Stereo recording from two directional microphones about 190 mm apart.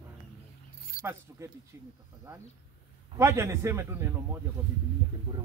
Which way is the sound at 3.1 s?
15° right (ahead or behind).